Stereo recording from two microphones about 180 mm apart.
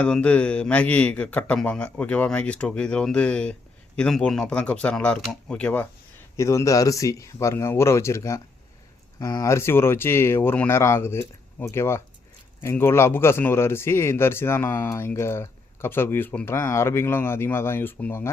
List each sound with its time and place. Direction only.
0.0 s a man's voice: 5° left (ahead or behind)